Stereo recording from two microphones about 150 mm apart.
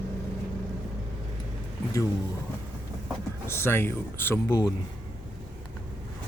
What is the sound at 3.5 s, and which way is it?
Speech, 15° left (ahead or behind).